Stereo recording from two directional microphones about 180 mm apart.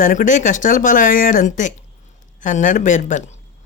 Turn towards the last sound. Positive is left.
turn(degrees=45)  # may be behind; listen again after turning